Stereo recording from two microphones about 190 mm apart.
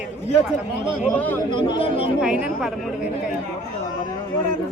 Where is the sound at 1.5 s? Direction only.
30° left (ahead or behind).